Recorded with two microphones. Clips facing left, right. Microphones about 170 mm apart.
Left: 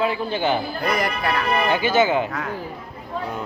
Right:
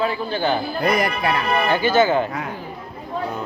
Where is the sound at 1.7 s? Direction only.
15° left (ahead or behind).